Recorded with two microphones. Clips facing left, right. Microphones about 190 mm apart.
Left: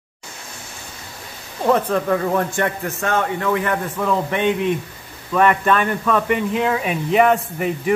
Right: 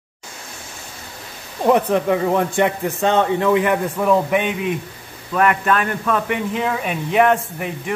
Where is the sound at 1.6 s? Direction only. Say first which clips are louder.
Right 2 dB; 15° right (ahead or behind).